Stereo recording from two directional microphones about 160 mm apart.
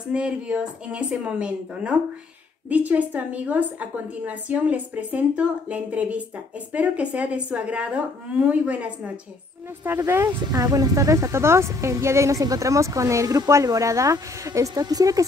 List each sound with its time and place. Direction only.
0.1 s a woman's voice: 5° right (ahead or behind); by 15.2 s 20° right (ahead or behind)